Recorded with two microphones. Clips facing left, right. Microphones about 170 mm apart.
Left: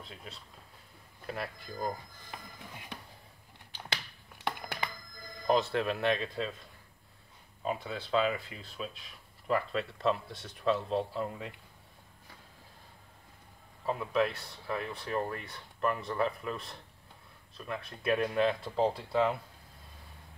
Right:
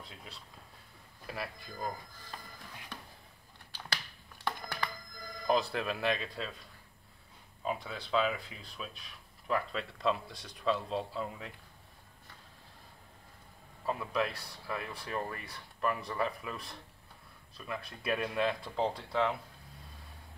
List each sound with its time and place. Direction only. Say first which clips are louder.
1.2 s speech: left 2 dB; centre (ahead or behind)
2.3 s music: left 2 dB; 15° left (ahead or behind)
4.5 s telephone: left 1 dB; 20° left (ahead or behind)
5.5 s speech: left 3 dB; centre (ahead or behind)
7.6 s speech: left 2 dB; centre (ahead or behind)
13.8 s speech: left 3 dB; centre (ahead or behind)